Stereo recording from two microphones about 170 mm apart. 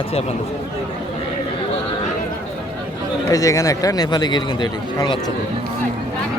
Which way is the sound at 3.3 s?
20° left (ahead or behind).